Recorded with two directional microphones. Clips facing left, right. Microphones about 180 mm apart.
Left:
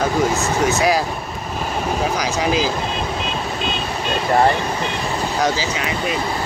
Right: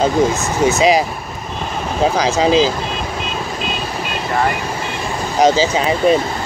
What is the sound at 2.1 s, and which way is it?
Speech, 25° right (ahead or behind).